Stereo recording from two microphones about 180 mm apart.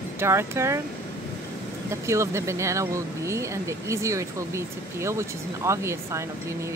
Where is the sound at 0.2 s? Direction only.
15° right (ahead or behind).